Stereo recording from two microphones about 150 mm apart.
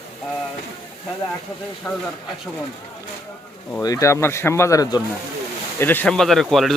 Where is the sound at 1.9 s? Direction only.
20° left (ahead or behind).